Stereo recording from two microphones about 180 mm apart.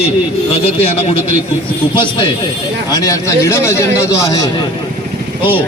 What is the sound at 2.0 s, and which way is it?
A man's voice, 25° left (ahead or behind).